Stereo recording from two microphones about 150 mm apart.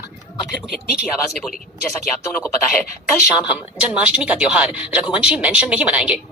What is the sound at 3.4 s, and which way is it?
A woman's voice, 5° right (ahead or behind).